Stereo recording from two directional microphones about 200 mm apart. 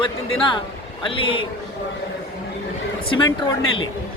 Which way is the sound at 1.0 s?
25° left (ahead or behind).